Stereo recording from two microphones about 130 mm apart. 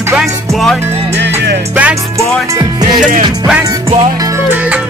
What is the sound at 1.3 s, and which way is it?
Music, 10° right (ahead or behind).